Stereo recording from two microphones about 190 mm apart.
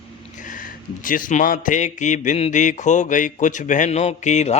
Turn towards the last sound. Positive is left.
turn(degrees=35)  # may be behind; listen again after turning